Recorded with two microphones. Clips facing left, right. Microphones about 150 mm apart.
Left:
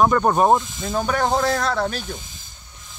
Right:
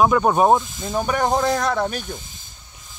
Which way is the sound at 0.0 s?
5° right (ahead or behind).